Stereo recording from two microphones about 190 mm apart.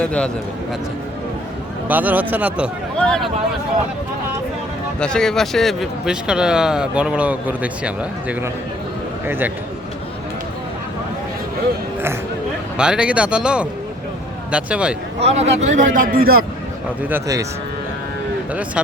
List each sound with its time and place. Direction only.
0.0 s speech: 5° left (ahead or behind)
1.9 s speech: 10° right (ahead or behind)
3.0 s speech: 5° left (ahead or behind)
4.9 s speech: 5° left (ahead or behind); by 9.5 s 10° right (ahead or behind)
12.7 s speech: 5° right (ahead or behind)
15.2 s a man's voice: 35° right (ahead or behind); by 16.4 s 50° right (ahead or behind)
17.0 s speech: 10° right (ahead or behind)